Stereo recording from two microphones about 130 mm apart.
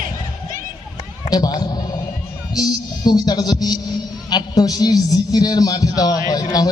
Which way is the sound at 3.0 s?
30° left (ahead or behind).